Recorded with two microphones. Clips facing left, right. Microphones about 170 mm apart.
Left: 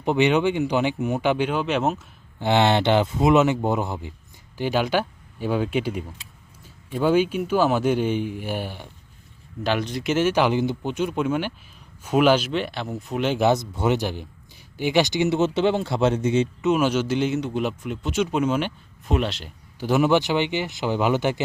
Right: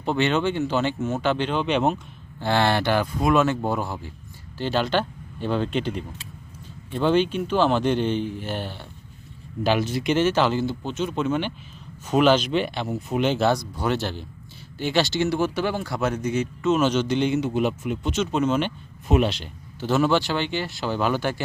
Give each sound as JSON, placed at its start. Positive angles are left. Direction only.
{"t": 0.0, "sound": "speech", "side_deg": 15}
{"t": 2.4, "sound": "speech", "side_deg": 20}
{"t": 9.6, "sound": "speech", "side_deg": -5}
{"t": 13.3, "sound": "speech", "side_deg": 20}
{"t": 16.6, "sound": "speech", "side_deg": 10}
{"t": 18.1, "sound": "speech", "side_deg": 10}
{"t": 19.0, "sound": "speech", "side_deg": -5}
{"t": 19.8, "sound": "speech", "side_deg": 15}